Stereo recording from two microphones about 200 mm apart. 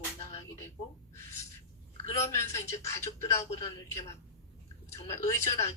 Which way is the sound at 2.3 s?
15° left (ahead or behind).